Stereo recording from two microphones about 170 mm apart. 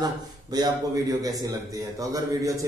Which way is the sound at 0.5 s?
25° right (ahead or behind).